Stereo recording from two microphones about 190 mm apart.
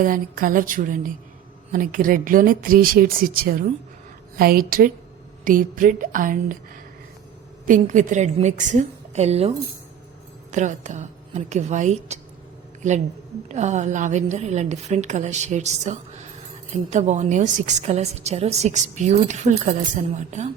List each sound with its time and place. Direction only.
0.0 s speech: 45° right (ahead or behind)
7.7 s a woman's voice: 40° right (ahead or behind)
10.5 s a woman's voice: 40° right (ahead or behind)
13.5 s a woman's voice: 35° right (ahead or behind)